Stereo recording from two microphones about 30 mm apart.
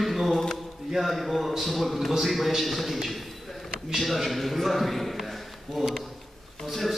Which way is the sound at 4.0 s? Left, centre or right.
Centre.